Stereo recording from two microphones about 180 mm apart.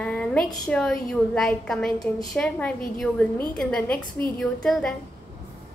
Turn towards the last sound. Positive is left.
turn(degrees=0)  # may be behind; listen again after turning